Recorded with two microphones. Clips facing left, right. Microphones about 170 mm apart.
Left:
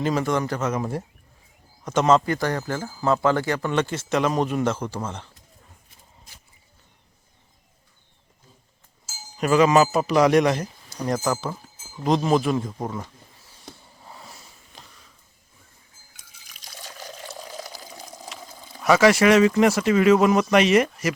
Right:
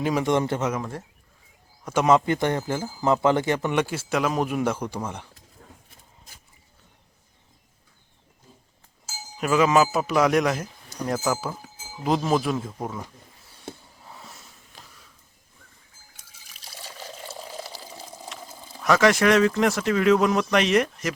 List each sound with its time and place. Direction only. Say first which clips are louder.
0.0 s speech: right 1 dB; 15° right (ahead or behind)
1.8 s speech: left 1 dB; 10° right (ahead or behind)
9.4 s speech: left 2 dB; centre (ahead or behind)
14.0 s sniff: left 3 dB; centre (ahead or behind)
16.5 s water: even; 5° right (ahead or behind)
17.7 s water: even; 30° right (ahead or behind)
17.9 s water: even; 5° right (ahead or behind)
18.7 s speech: left 2 dB; centre (ahead or behind)